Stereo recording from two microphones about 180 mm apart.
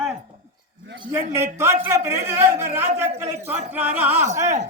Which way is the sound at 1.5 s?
15° right (ahead or behind).